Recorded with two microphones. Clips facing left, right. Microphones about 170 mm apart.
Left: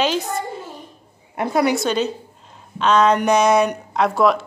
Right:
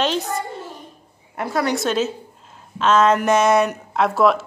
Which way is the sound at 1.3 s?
20° left (ahead or behind).